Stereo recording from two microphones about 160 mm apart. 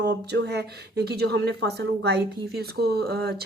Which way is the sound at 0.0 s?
90° right.